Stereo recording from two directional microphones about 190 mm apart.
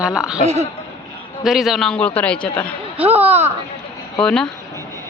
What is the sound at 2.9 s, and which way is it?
Speech, 10° right (ahead or behind).